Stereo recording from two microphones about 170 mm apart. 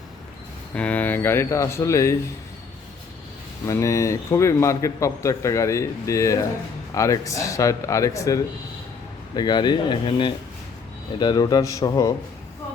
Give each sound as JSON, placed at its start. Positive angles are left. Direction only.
{"t": 0.7, "sound": "a man's voice", "side_deg": 10}
{"t": 3.7, "sound": "a man's voice", "side_deg": 15}